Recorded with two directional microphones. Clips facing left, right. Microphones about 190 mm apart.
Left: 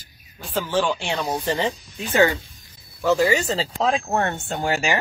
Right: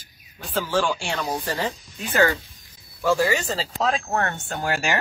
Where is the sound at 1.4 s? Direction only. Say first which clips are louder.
Left 4 dB; 25° left (ahead or behind).